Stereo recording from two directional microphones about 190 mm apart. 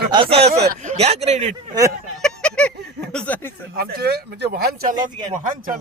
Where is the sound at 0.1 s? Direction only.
30° right (ahead or behind).